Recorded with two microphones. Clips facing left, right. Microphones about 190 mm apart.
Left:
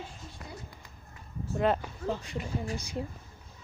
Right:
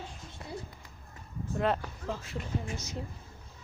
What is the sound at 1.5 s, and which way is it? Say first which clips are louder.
Speech: left 2 dB; centre (ahead or behind).